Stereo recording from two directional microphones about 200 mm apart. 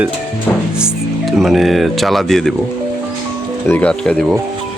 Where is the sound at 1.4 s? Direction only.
Centre (ahead or behind).